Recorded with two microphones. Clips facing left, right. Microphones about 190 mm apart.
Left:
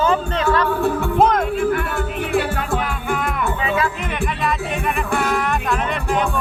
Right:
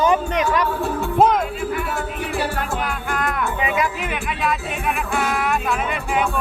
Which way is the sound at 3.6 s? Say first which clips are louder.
Left 1 dB; 15° right (ahead or behind).